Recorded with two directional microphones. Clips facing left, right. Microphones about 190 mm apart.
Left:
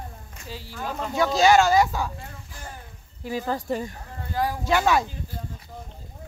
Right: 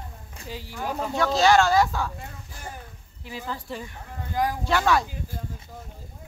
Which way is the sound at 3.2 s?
45° left (ahead or behind).